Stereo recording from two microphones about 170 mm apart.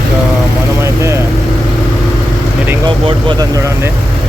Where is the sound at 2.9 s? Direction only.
30° right (ahead or behind).